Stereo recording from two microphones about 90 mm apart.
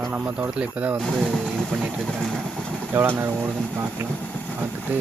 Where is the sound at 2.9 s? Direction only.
20° right (ahead or behind).